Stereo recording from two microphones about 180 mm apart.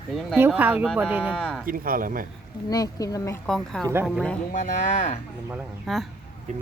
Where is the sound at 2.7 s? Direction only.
20° left (ahead or behind).